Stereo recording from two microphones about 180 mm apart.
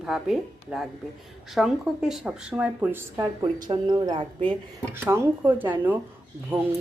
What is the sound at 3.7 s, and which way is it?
Speech, 25° right (ahead or behind).